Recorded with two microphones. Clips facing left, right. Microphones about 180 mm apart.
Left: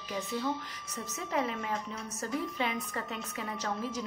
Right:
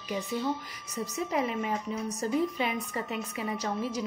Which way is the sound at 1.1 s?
15° right (ahead or behind).